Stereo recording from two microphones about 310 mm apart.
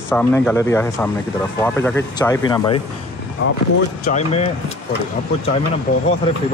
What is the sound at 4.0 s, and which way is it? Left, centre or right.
Speech, left.